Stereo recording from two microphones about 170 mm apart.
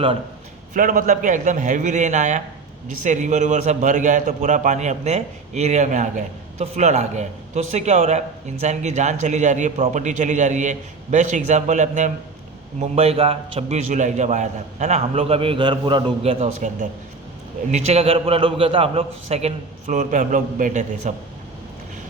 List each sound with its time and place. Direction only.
0.7 s a man's voice: 50° right (ahead or behind)